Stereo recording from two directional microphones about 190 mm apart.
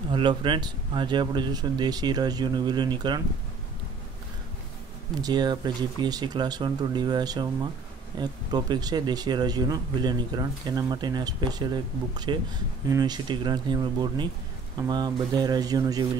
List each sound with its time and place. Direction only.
0.1 s speech: 25° right (ahead or behind)
5.2 s speech: 20° right (ahead or behind)